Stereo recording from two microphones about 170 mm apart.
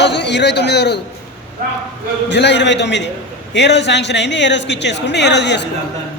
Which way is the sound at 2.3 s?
90° left.